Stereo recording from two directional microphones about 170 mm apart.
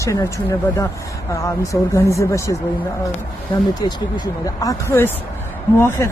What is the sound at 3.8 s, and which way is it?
Speech, 20° left (ahead or behind).